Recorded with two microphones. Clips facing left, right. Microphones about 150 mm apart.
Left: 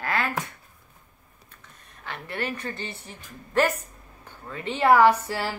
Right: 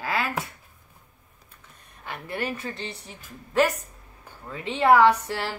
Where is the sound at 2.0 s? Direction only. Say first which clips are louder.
Right 1 dB; 10° right (ahead or behind); by 5.5 s 5° left (ahead or behind).